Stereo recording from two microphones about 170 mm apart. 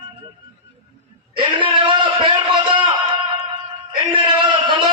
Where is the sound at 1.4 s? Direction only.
30° right (ahead or behind).